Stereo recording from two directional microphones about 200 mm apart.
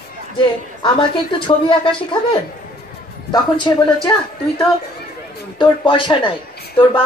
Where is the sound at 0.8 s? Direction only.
25° left (ahead or behind).